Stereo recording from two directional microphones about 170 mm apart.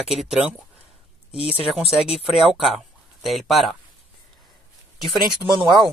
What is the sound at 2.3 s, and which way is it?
Speech, centre (ahead or behind).